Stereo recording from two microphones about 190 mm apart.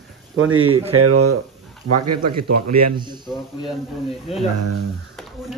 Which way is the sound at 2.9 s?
25° right (ahead or behind).